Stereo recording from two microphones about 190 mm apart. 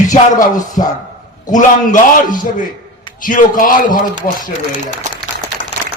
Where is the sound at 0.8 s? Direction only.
40° left (ahead or behind).